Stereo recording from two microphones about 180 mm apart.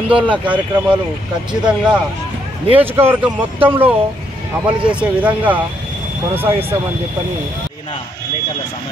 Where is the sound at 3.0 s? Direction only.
10° right (ahead or behind).